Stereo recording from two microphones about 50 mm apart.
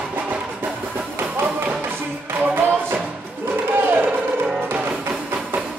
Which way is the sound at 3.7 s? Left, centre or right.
Right.